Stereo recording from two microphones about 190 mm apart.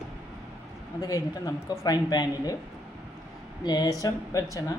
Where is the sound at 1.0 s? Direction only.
20° left (ahead or behind).